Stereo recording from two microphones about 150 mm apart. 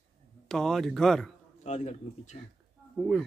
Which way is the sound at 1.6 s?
50° left (ahead or behind).